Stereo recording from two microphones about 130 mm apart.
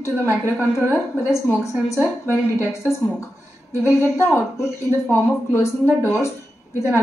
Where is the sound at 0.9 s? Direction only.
20° left (ahead or behind).